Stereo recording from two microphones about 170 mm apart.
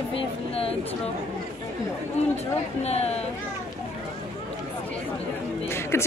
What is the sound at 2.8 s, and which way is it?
Speech, 40° left (ahead or behind).